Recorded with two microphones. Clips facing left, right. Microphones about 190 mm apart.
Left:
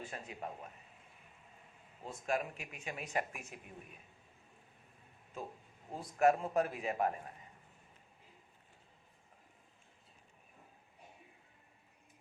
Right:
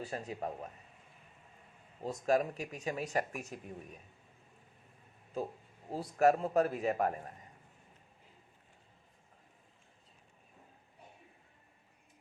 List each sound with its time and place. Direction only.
0.0 s speech: 35° right (ahead or behind)
2.0 s speech: 40° right (ahead or behind)
5.9 s speech: 35° right (ahead or behind)